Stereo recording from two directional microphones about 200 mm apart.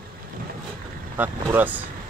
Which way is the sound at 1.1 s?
10° right (ahead or behind).